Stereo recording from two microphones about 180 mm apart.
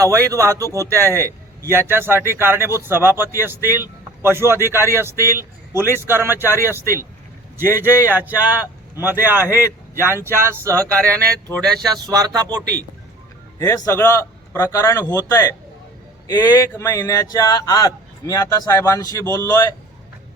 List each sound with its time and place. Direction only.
0.0 s speech: 15° right (ahead or behind)
7.6 s speech: 10° right (ahead or behind)
13.6 s a man's voice: 20° left (ahead or behind)